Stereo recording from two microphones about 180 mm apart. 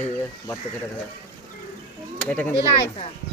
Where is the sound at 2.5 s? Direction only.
35° left (ahead or behind).